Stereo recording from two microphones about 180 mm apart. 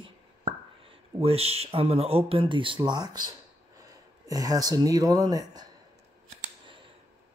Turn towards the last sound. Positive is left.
turn(degrees=-20)  # may be behind; listen again after turning